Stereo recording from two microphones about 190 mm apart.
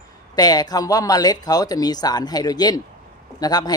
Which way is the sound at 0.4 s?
20° left (ahead or behind).